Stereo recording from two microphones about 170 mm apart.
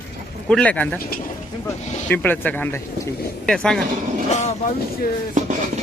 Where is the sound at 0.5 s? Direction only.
10° left (ahead or behind).